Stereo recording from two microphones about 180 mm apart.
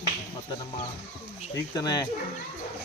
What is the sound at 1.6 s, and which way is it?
Speech, 20° left (ahead or behind).